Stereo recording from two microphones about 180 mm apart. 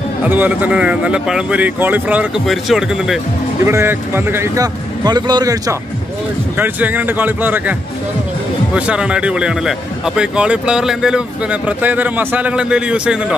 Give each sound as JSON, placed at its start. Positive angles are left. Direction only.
{"t": 0.3, "sound": "speech", "side_deg": -10}
{"t": 3.6, "sound": "speech", "side_deg": -15}
{"t": 8.7, "sound": "speech", "side_deg": -5}